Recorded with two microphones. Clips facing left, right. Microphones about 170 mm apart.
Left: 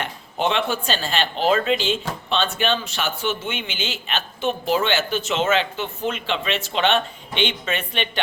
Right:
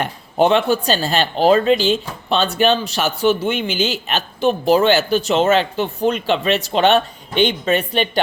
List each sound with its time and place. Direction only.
0.0 s speech: 40° right (ahead or behind)